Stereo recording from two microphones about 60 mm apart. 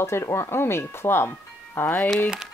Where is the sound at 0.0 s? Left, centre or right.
Left.